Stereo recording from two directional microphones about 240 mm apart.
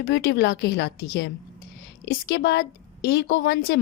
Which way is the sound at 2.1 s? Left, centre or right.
Left.